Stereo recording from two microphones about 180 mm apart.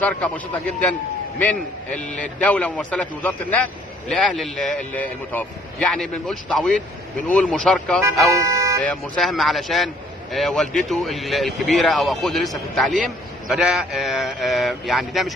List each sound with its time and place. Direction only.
0.0 s a man's voice: 10° left (ahead or behind)
2.1 s a man's voice: 5° left (ahead or behind)
8.4 s vehicle: 15° right (ahead or behind)
8.8 s speech: centre (ahead or behind)